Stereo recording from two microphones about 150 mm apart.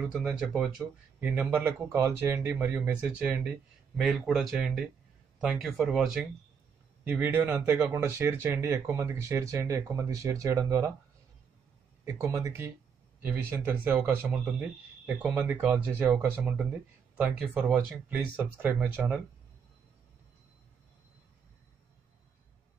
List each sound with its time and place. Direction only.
0.1 s speech: 5° right (ahead or behind)
7.1 s speech: 15° right (ahead or behind)
12.0 s speech: 20° right (ahead or behind)